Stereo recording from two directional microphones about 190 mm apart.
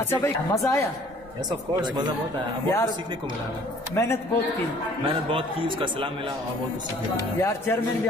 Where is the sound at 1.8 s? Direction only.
20° right (ahead or behind).